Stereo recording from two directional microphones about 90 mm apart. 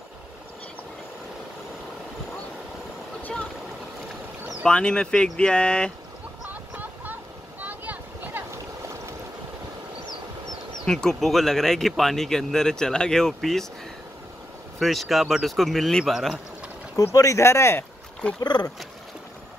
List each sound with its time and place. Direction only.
3.2 s vehicle: 15° left (ahead or behind)
4.6 s speech: 10° left (ahead or behind)
6.5 s vehicle: 20° right (ahead or behind)
7.6 s boat: 20° right (ahead or behind)
10.9 s speech: 5° left (ahead or behind)
14.8 s speech: centre (ahead or behind)
16.9 s speech: 40° left (ahead or behind)
18.4 s speech: 50° left (ahead or behind)